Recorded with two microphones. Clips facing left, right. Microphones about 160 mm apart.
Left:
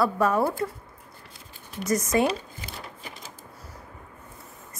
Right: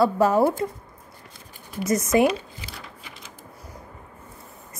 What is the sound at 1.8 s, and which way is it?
Speech, 20° right (ahead or behind).